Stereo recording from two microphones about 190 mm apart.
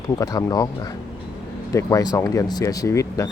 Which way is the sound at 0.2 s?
20° left (ahead or behind).